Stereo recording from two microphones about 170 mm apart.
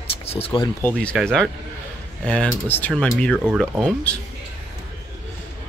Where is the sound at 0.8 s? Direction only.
5° left (ahead or behind).